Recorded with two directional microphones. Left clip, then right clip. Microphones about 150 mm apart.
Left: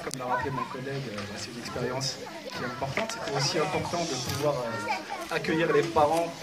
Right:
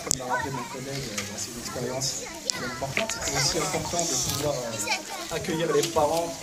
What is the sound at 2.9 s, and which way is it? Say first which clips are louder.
Speech: right 4 dB; 20° left (ahead or behind).